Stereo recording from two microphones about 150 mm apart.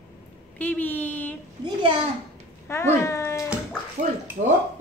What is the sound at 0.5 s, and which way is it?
Speech, 10° left (ahead or behind).